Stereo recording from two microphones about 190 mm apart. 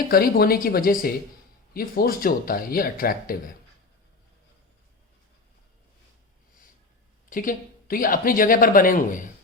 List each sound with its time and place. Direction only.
0.1 s speech: 50° left (ahead or behind)
7.3 s speech: 45° left (ahead or behind)